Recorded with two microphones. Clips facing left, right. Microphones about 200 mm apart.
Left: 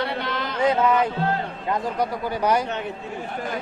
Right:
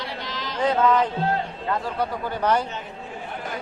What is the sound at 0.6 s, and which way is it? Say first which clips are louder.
A man's voice: even; 10° left (ahead or behind).